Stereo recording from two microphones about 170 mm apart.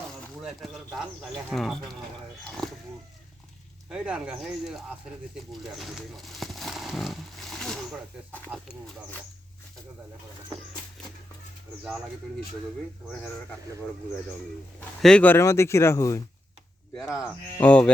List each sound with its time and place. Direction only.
0.1 s speech: centre (ahead or behind)
3.8 s speech: 5° right (ahead or behind)
5.5 s a sound: centre (ahead or behind)
8.5 s speech: 10° right (ahead or behind)
15.0 s speech: 5° left (ahead or behind)
16.9 s speech: centre (ahead or behind)